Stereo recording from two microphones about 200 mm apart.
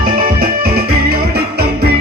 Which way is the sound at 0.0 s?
45° right (ahead or behind).